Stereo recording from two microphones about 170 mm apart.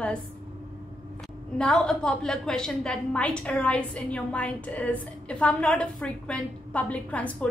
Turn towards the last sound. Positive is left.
turn(degrees=10)  # may be behind; listen again after turning